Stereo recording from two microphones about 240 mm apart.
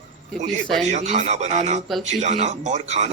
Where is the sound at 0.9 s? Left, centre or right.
Right.